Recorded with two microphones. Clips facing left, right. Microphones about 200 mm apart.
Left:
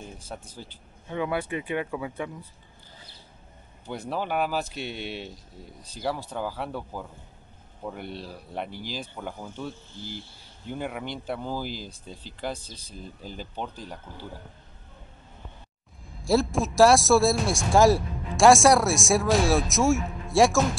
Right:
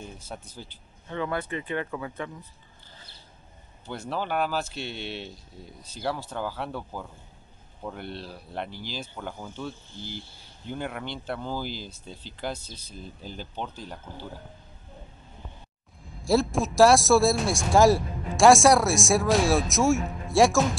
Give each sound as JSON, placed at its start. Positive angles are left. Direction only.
{"t": 0.6, "sound": "speech", "side_deg": 10}
{"t": 3.8, "sound": "a man's voice", "side_deg": 15}
{"t": 11.7, "sound": "speech", "side_deg": 40}
{"t": 13.6, "sound": "a man's voice", "side_deg": 5}
{"t": 16.2, "sound": "a man's voice", "side_deg": 0}